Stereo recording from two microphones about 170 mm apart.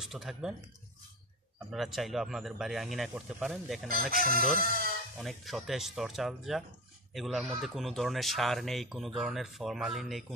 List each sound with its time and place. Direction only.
0.0 s speech: centre (ahead or behind)
1.7 s speech: centre (ahead or behind)
3.9 s speech: 60° right (ahead or behind)
5.2 s speech: centre (ahead or behind)